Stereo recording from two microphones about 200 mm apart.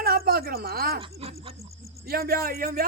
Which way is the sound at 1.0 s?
30° right (ahead or behind).